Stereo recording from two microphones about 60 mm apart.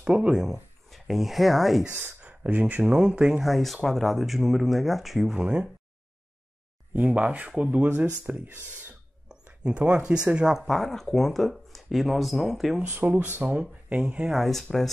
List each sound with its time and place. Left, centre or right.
0.0 s speech: centre
2.0 s speech: right
3.4 s speech: centre
5.3 s speech: centre
6.9 s speech: right
9.3 s speech: centre
10.6 s speech: centre
12.8 s speech: right
13.4 s speech: right
14.3 s speech: centre